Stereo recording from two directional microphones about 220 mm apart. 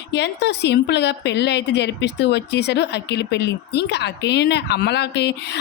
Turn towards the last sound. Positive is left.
turn(degrees=50)  # may be behind; listen again after turning